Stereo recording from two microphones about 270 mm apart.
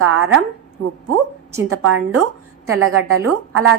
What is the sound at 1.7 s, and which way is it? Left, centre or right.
A woman's voice, right.